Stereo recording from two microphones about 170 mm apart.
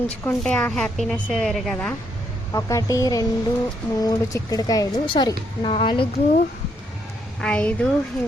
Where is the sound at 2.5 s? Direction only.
20° left (ahead or behind).